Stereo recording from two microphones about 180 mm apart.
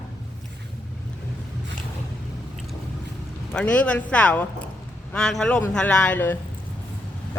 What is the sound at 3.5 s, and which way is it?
A man's voice, 5° left (ahead or behind).